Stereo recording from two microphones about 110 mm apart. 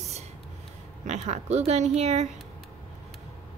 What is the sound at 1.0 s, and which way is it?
Speech, 85° right.